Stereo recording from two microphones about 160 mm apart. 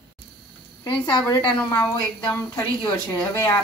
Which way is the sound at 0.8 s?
25° left (ahead or behind).